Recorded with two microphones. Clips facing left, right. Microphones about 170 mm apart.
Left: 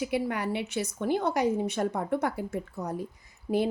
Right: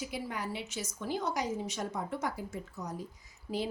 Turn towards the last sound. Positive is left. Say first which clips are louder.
# left 9 dB
turn(degrees=55)  # may be behind; listen again after turning